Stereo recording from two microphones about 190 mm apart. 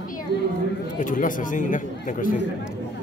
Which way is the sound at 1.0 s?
45° left (ahead or behind).